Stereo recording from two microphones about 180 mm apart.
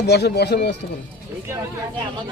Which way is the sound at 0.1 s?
65° left (ahead or behind).